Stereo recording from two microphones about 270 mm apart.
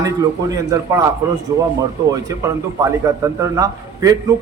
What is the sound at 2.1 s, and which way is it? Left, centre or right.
A man's voice, centre.